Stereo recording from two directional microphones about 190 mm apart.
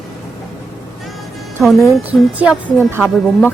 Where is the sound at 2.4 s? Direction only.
5° right (ahead or behind).